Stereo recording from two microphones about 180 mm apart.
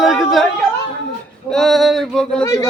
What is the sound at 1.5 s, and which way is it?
Speech, centre (ahead or behind).